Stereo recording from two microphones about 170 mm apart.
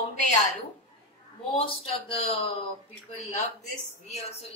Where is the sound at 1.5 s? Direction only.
35° left (ahead or behind).